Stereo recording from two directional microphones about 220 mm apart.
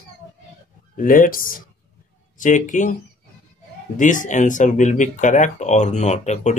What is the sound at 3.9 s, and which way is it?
Speech, 35° left (ahead or behind).